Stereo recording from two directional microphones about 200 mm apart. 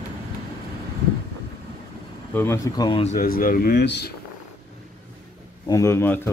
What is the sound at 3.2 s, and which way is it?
Speech, 45° left (ahead or behind).